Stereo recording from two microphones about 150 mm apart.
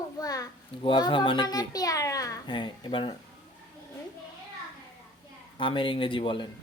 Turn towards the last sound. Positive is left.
turn(degrees=35)  # may be behind; listen again after turning